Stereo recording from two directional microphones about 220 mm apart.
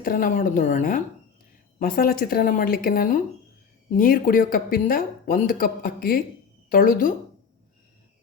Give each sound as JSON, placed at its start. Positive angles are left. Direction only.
{"t": 0.0, "sound": "speech", "side_deg": 40}